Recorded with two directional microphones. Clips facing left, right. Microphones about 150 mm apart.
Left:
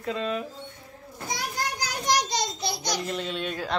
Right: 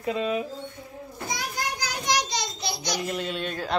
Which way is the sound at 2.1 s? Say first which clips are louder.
Left 2 dB; 50° left (ahead or behind).